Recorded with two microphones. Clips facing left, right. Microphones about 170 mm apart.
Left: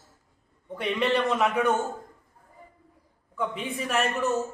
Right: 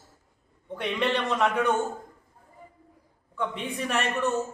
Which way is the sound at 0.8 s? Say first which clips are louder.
Left 2 dB; 5° left (ahead or behind).